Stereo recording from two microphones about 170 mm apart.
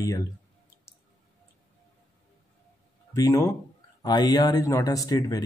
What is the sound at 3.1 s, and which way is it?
Speech, 15° left (ahead or behind).